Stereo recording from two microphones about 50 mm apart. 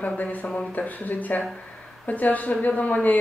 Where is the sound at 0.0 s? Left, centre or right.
Left.